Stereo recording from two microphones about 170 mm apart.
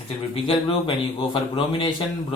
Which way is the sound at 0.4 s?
30° left (ahead or behind).